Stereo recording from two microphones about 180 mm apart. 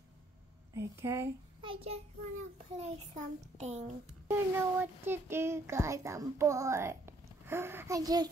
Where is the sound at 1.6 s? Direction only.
30° right (ahead or behind).